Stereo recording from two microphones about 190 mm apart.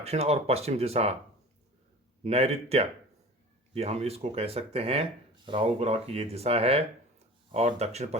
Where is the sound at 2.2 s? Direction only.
35° right (ahead or behind).